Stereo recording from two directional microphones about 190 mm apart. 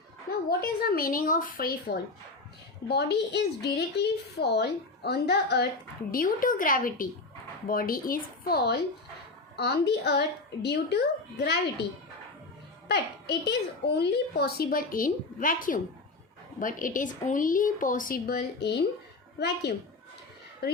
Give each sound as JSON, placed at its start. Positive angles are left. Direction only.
{"t": 0.3, "sound": "a woman's voice", "side_deg": 50}
{"t": 6.1, "sound": "a woman's voice", "side_deg": 50}
{"t": 12.9, "sound": "a child's voice", "side_deg": 60}